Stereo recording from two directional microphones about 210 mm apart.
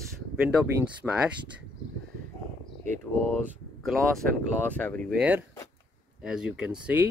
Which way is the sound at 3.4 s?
Centre (ahead or behind).